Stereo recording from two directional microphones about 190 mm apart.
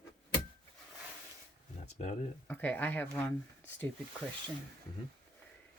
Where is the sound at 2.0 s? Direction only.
35° left (ahead or behind).